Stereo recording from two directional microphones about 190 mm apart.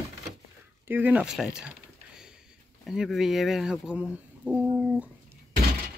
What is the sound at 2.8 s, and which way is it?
Speech, centre (ahead or behind).